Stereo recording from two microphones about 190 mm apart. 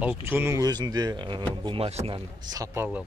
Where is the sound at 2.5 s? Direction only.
15° right (ahead or behind).